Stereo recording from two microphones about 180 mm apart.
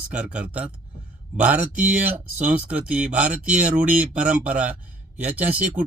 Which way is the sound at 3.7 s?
50° right (ahead or behind).